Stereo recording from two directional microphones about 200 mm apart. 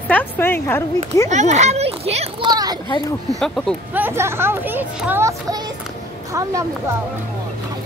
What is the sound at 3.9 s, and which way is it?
Speech, 10° right (ahead or behind).